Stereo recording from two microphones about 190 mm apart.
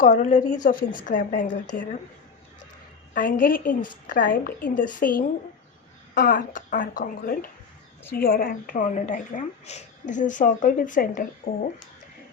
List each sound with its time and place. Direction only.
0.0 s a woman's voice: 45° left (ahead or behind)
3.2 s a woman's voice: 45° left (ahead or behind)